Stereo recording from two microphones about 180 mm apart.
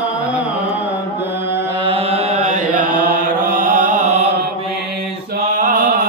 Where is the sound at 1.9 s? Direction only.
30° right (ahead or behind).